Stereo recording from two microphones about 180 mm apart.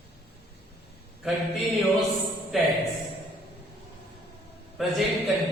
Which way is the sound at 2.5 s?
Centre (ahead or behind).